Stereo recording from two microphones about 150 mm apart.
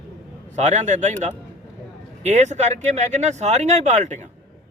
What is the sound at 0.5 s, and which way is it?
Speech, 50° right (ahead or behind).